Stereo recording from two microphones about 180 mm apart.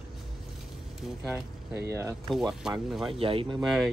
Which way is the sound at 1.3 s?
15° right (ahead or behind).